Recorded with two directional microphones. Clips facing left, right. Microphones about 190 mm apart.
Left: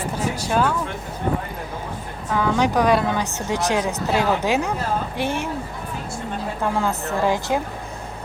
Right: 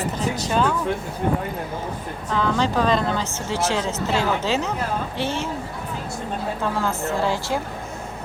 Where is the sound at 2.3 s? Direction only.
15° left (ahead or behind).